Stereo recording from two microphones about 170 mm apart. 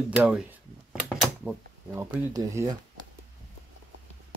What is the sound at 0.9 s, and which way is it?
Mechanisms, 5° right (ahead or behind).